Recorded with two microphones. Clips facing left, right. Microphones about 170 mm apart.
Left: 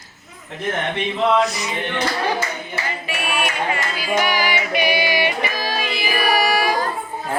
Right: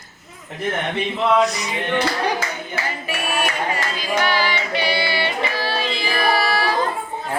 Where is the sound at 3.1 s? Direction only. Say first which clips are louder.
Even; 40° right (ahead or behind).